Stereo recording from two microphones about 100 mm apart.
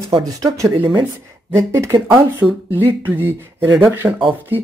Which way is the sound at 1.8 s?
35° right (ahead or behind).